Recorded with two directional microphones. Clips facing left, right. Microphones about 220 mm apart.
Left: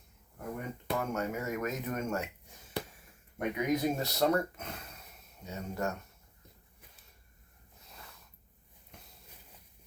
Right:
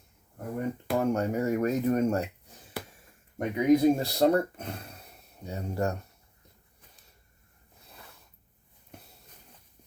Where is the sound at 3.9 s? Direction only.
30° right (ahead or behind).